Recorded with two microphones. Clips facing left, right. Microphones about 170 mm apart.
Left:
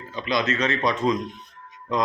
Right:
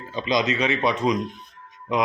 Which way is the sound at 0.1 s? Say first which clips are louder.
Right 2 dB; 20° right (ahead or behind).